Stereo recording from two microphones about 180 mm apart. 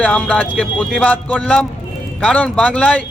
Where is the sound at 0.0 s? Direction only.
10° left (ahead or behind).